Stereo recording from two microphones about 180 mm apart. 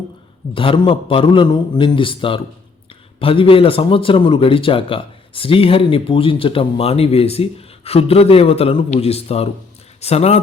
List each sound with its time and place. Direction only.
0.5 s a man's voice: 30° left (ahead or behind)